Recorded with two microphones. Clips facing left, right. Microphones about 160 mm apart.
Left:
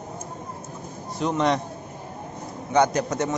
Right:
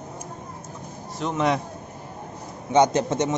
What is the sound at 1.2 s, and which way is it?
Speech, 5° right (ahead or behind).